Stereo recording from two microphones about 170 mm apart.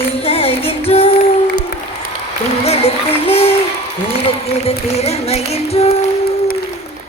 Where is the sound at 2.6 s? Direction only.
35° left (ahead or behind).